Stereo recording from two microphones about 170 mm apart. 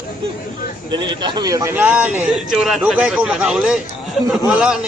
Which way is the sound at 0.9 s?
25° right (ahead or behind).